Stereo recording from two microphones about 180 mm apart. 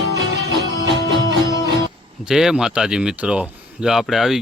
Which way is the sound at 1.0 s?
20° left (ahead or behind).